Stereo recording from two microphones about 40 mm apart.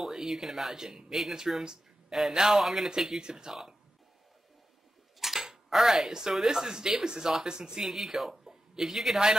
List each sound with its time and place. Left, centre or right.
0.0 s speech: centre
1.6 s a sound: centre
2.3 s speech: centre
5.2 s speech: centre
7.9 s a man's voice: centre